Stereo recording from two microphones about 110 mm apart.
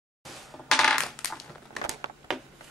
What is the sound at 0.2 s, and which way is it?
Crushing, centre (ahead or behind).